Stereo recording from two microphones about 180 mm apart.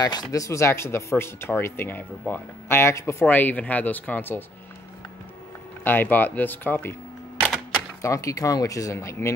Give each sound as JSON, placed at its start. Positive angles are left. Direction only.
{"t": 0.0, "sound": "speech", "side_deg": 20}
{"t": 5.9, "sound": "speech", "side_deg": 10}
{"t": 7.3, "sound": "typewriter", "side_deg": -5}
{"t": 8.0, "sound": "speech", "side_deg": 20}